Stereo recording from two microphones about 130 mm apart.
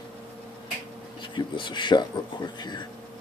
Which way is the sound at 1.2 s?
40° left (ahead or behind).